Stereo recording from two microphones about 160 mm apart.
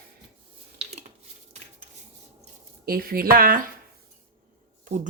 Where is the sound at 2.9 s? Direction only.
65° right (ahead or behind).